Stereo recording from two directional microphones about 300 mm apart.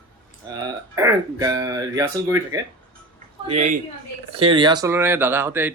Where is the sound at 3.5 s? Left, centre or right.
Right.